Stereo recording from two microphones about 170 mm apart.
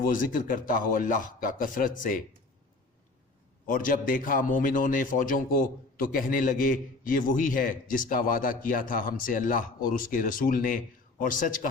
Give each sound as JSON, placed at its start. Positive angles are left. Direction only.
{"t": 0.1, "sound": "a man's voice", "side_deg": 55}
{"t": 3.7, "sound": "a man's voice", "side_deg": 55}